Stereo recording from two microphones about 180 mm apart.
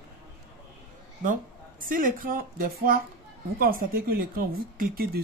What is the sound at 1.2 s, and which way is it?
Speech, 50° right (ahead or behind).